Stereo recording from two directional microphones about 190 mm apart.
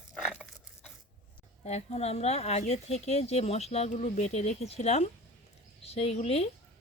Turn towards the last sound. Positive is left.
turn(degrees=30)  # may be behind; listen again after turning